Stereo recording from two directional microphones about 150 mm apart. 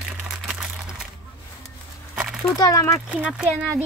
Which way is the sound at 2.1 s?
5° right (ahead or behind).